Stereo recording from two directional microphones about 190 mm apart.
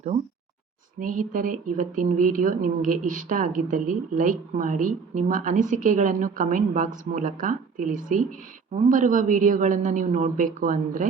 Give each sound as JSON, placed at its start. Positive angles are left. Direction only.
{"t": 0.9, "sound": "speech", "side_deg": -45}